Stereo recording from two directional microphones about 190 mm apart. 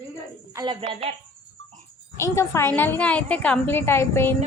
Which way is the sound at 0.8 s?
35° right (ahead or behind).